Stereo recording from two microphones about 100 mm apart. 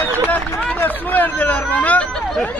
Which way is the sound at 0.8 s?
20° left (ahead or behind).